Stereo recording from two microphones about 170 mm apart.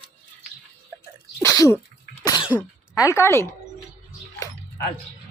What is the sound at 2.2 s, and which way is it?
Cough, 25° left (ahead or behind).